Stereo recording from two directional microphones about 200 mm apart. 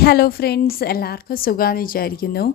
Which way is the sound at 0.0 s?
50° left (ahead or behind).